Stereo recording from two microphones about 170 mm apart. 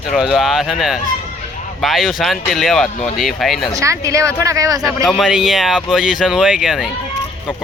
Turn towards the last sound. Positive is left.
turn(degrees=0)  # may be behind; listen again after turning